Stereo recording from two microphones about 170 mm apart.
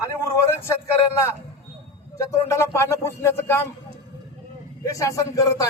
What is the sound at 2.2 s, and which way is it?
Speech, 15° left (ahead or behind).